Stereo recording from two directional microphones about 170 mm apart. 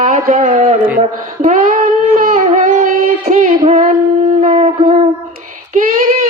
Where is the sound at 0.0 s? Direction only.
45° right (ahead or behind).